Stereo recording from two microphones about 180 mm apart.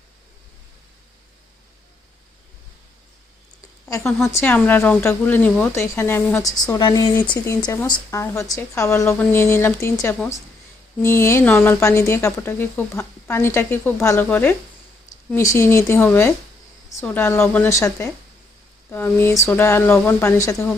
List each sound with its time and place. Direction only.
3.8 s speech: 15° left (ahead or behind)